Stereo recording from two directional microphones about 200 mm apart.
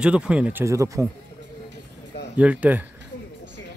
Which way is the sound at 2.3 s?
5° right (ahead or behind).